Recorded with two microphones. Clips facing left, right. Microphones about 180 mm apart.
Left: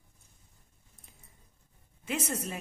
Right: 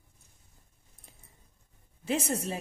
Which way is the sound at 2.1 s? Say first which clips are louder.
Right 4 dB; 30° right (ahead or behind).